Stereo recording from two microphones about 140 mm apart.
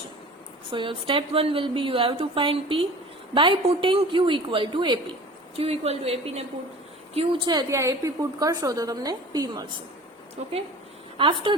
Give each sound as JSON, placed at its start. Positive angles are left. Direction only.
{"t": 0.7, "sound": "a woman's voice", "side_deg": -35}
{"t": 5.5, "sound": "a woman's voice", "side_deg": -45}
{"t": 7.7, "sound": "a woman's voice", "side_deg": -20}
{"t": 11.2, "sound": "a woman's voice", "side_deg": -40}